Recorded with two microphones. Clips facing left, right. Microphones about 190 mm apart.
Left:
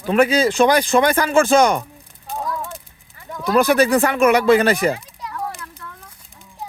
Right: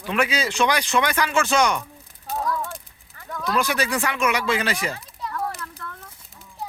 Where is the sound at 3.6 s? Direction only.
55° left (ahead or behind).